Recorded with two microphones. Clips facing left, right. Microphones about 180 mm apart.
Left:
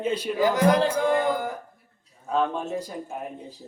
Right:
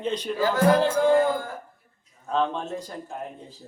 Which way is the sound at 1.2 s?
15° left (ahead or behind).